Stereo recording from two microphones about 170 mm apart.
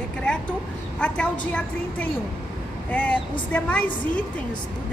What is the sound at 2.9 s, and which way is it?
Speech, 10° left (ahead or behind).